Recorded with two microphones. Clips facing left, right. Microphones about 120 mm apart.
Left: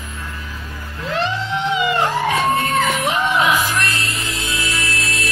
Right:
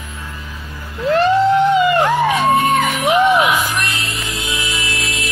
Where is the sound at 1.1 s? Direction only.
50° right (ahead or behind).